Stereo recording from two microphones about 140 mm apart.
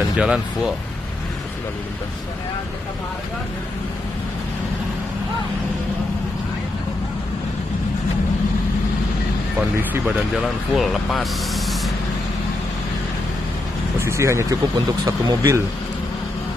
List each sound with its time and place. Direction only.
0.2 s speech: 5° right (ahead or behind)
9.8 s speech: 15° right (ahead or behind)
10.3 s speech: centre (ahead or behind)
13.9 s speech: 20° right (ahead or behind)